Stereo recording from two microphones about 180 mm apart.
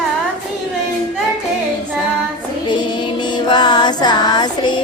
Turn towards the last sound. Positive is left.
turn(degrees=25)  # may be behind; listen again after turning